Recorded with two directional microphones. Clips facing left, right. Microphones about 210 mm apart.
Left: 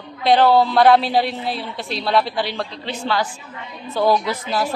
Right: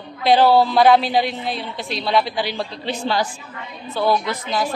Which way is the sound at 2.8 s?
15° right (ahead or behind).